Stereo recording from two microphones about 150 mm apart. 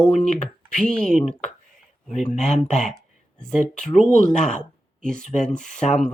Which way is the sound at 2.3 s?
50° left (ahead or behind).